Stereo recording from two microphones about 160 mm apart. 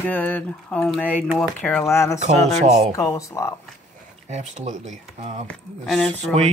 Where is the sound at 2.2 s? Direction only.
45° right (ahead or behind).